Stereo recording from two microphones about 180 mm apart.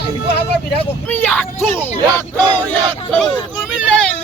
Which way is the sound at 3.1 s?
5° left (ahead or behind).